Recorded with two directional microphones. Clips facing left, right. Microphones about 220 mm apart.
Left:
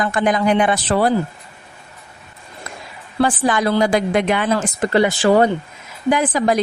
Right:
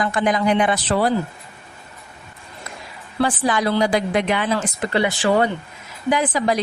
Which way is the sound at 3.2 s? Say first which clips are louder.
Left 3 dB; 50° left (ahead or behind).